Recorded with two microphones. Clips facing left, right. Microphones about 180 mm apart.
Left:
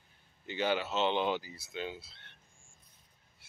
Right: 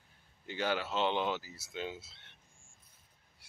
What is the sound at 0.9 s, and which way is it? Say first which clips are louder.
Speech: left 2 dB; 5° right (ahead or behind).